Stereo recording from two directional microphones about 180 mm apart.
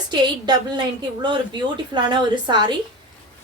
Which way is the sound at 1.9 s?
25° right (ahead or behind).